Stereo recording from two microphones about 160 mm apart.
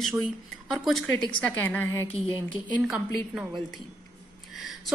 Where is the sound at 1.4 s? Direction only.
10° left (ahead or behind).